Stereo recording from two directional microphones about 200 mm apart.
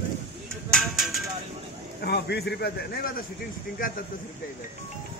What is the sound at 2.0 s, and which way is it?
A man's voice, 55° left (ahead or behind).